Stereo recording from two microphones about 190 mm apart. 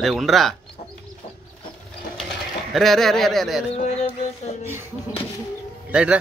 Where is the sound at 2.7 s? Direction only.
Centre (ahead or behind).